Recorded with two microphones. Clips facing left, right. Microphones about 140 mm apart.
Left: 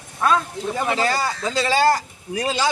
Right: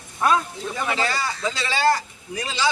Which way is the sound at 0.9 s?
40° left (ahead or behind).